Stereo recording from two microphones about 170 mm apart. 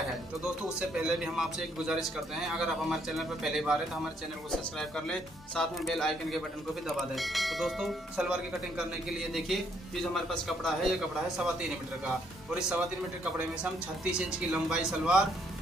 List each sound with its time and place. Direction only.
0.7 s a man's voice: 5° right (ahead or behind)
10.1 s a man's voice: centre (ahead or behind)
12.5 s a man's voice: 5° right (ahead or behind)